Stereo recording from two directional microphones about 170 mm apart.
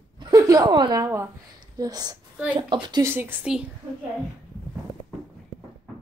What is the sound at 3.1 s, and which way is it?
Speech, 10° right (ahead or behind).